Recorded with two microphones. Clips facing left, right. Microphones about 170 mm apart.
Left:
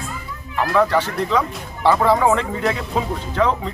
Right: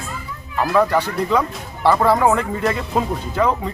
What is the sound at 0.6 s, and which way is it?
Speech, 10° right (ahead or behind).